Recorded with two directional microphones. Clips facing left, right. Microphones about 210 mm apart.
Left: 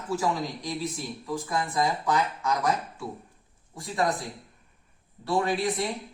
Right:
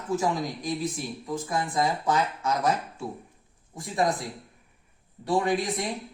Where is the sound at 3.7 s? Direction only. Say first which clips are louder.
Right 1 dB; 20° right (ahead or behind).